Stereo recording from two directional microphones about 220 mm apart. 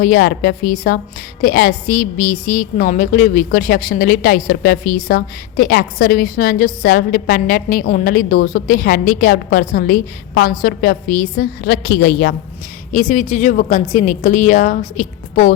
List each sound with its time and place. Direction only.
0.0 s a woman's voice: 40° left (ahead or behind)